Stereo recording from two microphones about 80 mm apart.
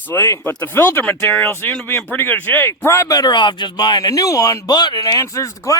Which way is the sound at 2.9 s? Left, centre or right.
Left.